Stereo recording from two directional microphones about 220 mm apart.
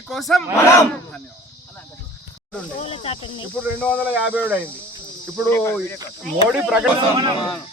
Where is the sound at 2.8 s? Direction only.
25° left (ahead or behind).